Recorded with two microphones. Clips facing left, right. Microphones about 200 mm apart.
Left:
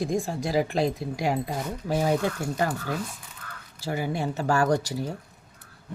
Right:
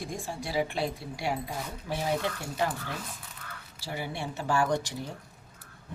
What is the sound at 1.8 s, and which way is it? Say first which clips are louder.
Speech: left 6 dB; 45° left (ahead or behind).